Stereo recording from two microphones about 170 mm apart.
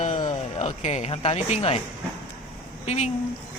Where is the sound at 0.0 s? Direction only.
45° left (ahead or behind).